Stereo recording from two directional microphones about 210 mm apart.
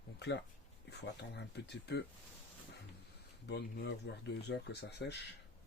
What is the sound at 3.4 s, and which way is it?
Speech, 55° left (ahead or behind).